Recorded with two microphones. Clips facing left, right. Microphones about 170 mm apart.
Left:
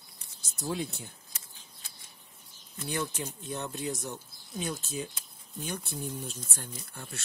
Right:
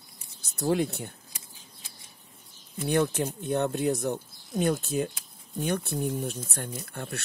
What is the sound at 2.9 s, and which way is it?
Speech, 55° right (ahead or behind).